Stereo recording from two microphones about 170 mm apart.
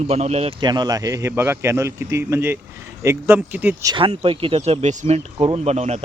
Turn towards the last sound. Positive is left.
turn(degrees=-40)  # may be behind; listen again after turning